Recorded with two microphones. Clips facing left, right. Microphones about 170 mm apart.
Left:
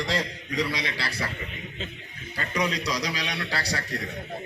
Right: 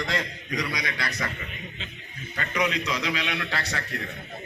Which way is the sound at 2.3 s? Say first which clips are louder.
Right 1 dB; 30° left (ahead or behind).